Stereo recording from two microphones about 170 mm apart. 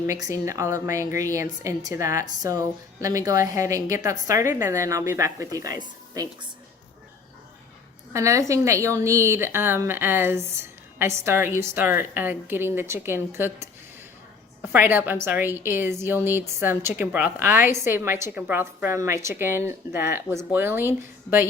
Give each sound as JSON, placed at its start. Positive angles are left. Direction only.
{"t": 0.1, "sound": "a woman's voice", "side_deg": -20}
{"t": 8.1, "sound": "a woman's voice", "side_deg": -20}
{"t": 14.7, "sound": "a woman's voice", "side_deg": -10}